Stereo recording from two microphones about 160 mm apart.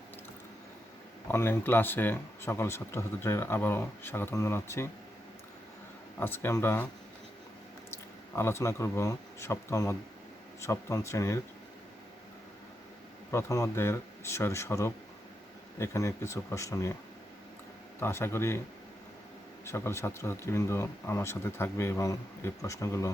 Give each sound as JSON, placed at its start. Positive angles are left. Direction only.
{"t": 1.3, "sound": "speech", "side_deg": 15}
{"t": 6.1, "sound": "speech", "side_deg": 15}
{"t": 8.4, "sound": "speech", "side_deg": 15}
{"t": 13.3, "sound": "speech", "side_deg": 20}
{"t": 18.0, "sound": "speech", "side_deg": 15}
{"t": 19.6, "sound": "speech", "side_deg": 15}